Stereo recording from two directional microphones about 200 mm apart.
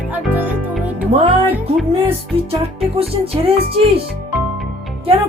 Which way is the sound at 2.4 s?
30° right (ahead or behind).